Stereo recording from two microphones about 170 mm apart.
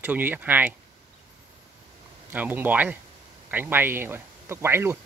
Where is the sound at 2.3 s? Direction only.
10° right (ahead or behind).